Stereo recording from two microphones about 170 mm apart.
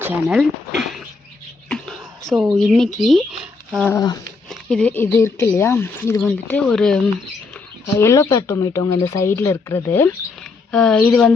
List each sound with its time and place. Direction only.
0.0 s speech: 5° right (ahead or behind)
1.7 s a sound: centre (ahead or behind)
3.8 s speech: 20° left (ahead or behind)
4.4 s speech: 5° left (ahead or behind)
7.9 s speech: 15° left (ahead or behind)